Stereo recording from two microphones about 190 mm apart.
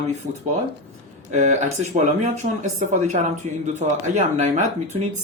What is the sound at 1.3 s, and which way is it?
Speech, 40° right (ahead or behind).